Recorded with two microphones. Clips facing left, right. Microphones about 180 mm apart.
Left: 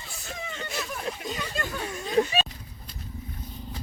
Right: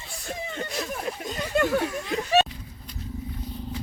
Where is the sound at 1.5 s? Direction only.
75° right (ahead or behind).